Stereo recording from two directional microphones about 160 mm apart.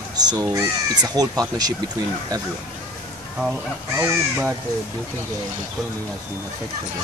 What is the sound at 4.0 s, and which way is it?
Speech, 15° right (ahead or behind).